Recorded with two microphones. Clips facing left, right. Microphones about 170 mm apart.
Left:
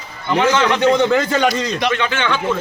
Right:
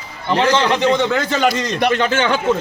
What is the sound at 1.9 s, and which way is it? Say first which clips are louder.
Speech: right 3 dB; 40° right (ahead or behind).